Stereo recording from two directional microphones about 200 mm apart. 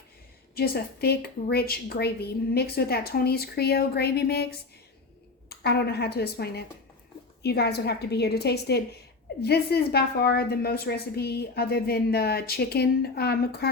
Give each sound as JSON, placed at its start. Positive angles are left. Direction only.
{"t": 0.5, "sound": "a woman's voice", "side_deg": 50}
{"t": 5.5, "sound": "a woman's voice", "side_deg": 55}